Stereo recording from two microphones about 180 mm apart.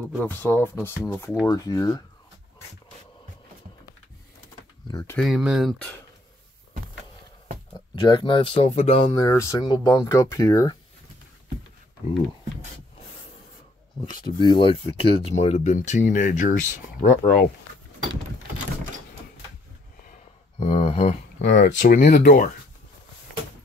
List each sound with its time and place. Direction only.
0.2 s speech: 10° left (ahead or behind)
5.1 s speech: centre (ahead or behind)
7.9 s speech: 25° left (ahead or behind)
9.1 s speech: 20° left (ahead or behind)
14.2 s speech: 25° left (ahead or behind); by 17.1 s 45° left (ahead or behind)
20.5 s speech: 30° left (ahead or behind); by 22.5 s 50° left (ahead or behind)